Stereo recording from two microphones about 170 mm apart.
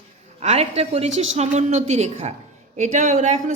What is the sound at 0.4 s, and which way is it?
A woman's voice, 40° right (ahead or behind).